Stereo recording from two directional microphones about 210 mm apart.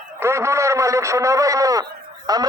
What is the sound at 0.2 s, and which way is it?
A man's voice, 15° right (ahead or behind).